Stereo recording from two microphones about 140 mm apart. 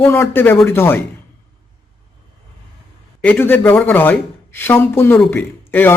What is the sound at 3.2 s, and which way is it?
Speech, 10° left (ahead or behind).